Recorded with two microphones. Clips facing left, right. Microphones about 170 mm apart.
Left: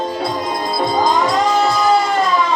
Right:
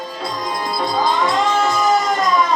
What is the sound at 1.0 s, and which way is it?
Music, 40° left (ahead or behind).